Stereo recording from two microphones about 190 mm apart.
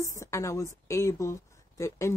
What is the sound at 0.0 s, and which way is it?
A woman's voice, 15° left (ahead or behind).